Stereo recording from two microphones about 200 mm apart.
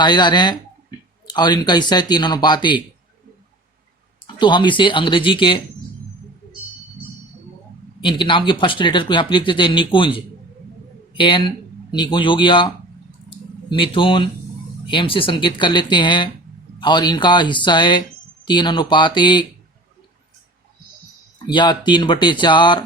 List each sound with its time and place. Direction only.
0.0 s speech: 20° left (ahead or behind)
4.4 s speech: 25° left (ahead or behind)
8.0 s speech: 25° left (ahead or behind)
21.4 s speech: 20° left (ahead or behind)